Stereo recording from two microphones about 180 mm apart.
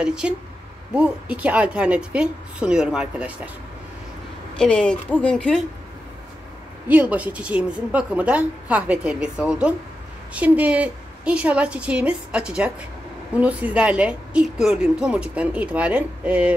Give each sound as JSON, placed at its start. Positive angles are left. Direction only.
{"t": 0.0, "sound": "a woman's voice", "side_deg": -5}
{"t": 4.6, "sound": "speech", "side_deg": 5}
{"t": 6.9, "sound": "a woman's voice", "side_deg": -10}